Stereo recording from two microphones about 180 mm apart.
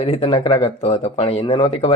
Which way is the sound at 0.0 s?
35° left (ahead or behind).